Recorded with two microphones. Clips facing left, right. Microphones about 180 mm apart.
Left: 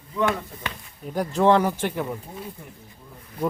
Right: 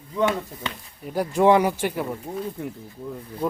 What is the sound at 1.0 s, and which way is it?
Speech, 5° right (ahead or behind).